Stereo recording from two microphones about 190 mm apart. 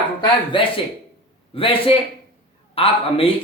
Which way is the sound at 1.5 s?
30° left (ahead or behind).